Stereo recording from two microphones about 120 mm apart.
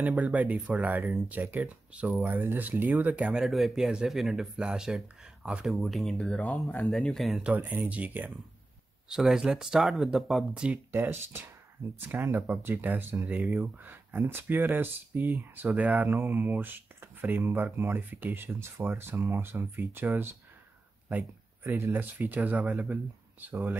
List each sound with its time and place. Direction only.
0.0 s speech: 10° right (ahead or behind)
7.5 s speech: 15° right (ahead or behind)
10.9 s speech: 20° right (ahead or behind)